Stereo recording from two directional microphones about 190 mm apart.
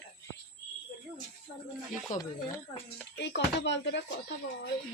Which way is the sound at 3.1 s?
65° left (ahead or behind).